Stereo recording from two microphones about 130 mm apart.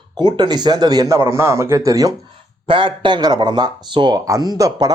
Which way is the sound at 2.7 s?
40° right (ahead or behind).